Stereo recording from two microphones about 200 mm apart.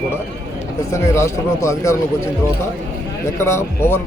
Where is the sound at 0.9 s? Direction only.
15° left (ahead or behind).